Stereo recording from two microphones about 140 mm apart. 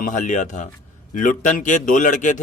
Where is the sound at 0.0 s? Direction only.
65° left (ahead or behind).